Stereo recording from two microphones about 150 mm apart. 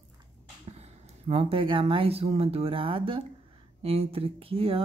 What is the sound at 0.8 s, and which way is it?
Speech, 40° right (ahead or behind).